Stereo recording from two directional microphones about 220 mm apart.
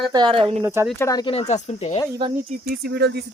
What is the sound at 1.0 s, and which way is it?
Speech, 15° left (ahead or behind).